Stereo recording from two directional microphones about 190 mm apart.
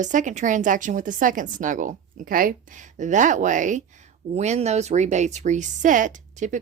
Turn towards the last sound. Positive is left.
turn(degrees=-40)  # may be behind; listen again after turning